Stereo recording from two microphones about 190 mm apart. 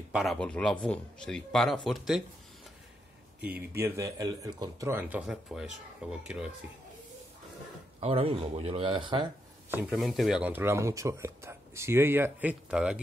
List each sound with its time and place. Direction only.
0.1 s speech: centre (ahead or behind)
3.3 s speech: 10° right (ahead or behind)
8.0 s speech: 30° right (ahead or behind)
9.7 s speech: 10° right (ahead or behind)